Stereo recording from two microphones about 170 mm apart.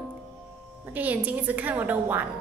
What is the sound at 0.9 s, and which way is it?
A woman's voice, 10° right (ahead or behind).